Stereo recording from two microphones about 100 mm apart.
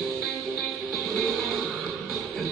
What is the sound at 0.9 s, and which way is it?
Music, centre (ahead or behind).